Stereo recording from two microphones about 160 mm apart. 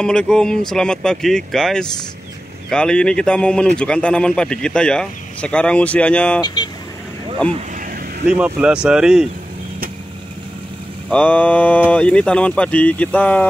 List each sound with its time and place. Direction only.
0.0 s a man's voice: 5° left (ahead or behind)
6.4 s speech: 25° left (ahead or behind)
8.3 s a man's voice: 10° right (ahead or behind)
11.1 s speech: 10° left (ahead or behind)